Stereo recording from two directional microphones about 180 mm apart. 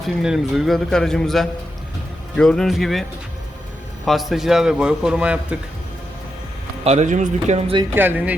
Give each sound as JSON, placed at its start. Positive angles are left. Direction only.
{"t": 0.2, "sound": "a man's voice", "side_deg": 0}
{"t": 6.8, "sound": "speech", "side_deg": -40}
{"t": 7.9, "sound": "speech", "side_deg": -10}